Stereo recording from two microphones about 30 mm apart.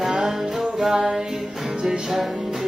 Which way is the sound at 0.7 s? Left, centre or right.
Right.